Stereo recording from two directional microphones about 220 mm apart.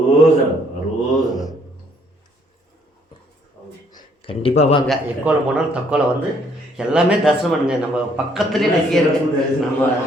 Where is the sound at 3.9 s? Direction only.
20° left (ahead or behind).